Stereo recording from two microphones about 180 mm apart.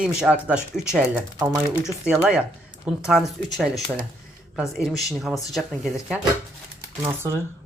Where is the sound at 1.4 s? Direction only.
20° right (ahead or behind).